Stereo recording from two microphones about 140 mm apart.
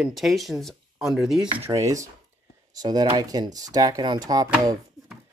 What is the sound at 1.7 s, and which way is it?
Speech, 25° right (ahead or behind).